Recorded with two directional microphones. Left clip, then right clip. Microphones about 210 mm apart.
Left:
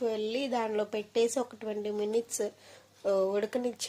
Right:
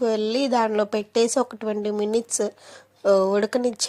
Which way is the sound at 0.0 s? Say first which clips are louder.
Right 9 dB; 30° right (ahead or behind).